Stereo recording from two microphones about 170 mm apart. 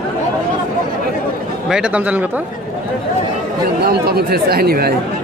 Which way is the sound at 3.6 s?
65° right (ahead or behind).